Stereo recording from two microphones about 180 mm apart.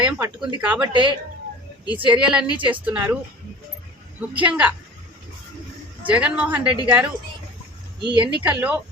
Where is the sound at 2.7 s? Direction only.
10° right (ahead or behind).